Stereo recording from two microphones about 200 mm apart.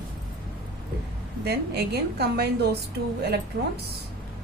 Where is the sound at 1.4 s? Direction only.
55° right (ahead or behind).